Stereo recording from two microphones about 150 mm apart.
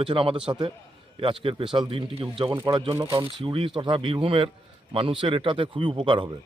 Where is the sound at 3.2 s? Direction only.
35° right (ahead or behind).